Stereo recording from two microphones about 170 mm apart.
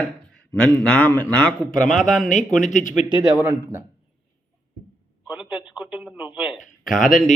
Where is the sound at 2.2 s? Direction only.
45° left (ahead or behind).